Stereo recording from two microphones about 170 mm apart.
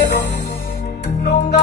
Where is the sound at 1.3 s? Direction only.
40° left (ahead or behind).